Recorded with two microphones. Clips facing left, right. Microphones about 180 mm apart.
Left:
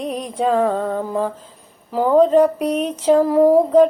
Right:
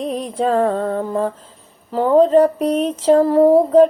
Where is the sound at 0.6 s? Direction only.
30° right (ahead or behind).